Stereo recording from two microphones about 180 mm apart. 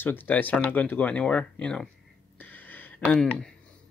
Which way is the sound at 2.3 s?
10° left (ahead or behind).